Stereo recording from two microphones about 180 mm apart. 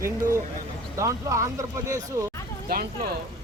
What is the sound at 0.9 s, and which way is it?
Speech, 15° right (ahead or behind).